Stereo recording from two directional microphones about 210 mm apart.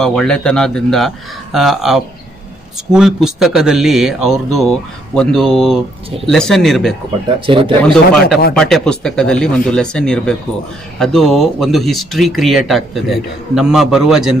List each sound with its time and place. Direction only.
0.0 s speech: centre (ahead or behind)
7.3 s speech: 25° right (ahead or behind)
7.8 s speech: 5° left (ahead or behind)